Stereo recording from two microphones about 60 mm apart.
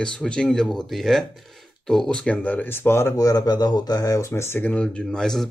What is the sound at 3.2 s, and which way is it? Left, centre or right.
Speech, left.